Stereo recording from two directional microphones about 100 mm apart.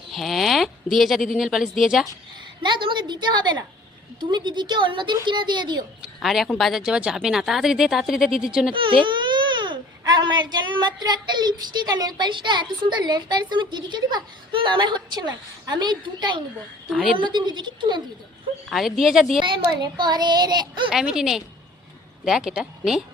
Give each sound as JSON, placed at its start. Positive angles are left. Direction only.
{"t": 0.1, "sound": "speech", "side_deg": 0}
{"t": 2.6, "sound": "a child's voice", "side_deg": -55}
{"t": 6.0, "sound": "speech", "side_deg": 0}
{"t": 8.7, "sound": "a child's voice", "side_deg": -60}
{"t": 18.7, "sound": "speech", "side_deg": 0}
{"t": 19.4, "sound": "a child's voice", "side_deg": -50}
{"t": 20.9, "sound": "speech", "side_deg": -5}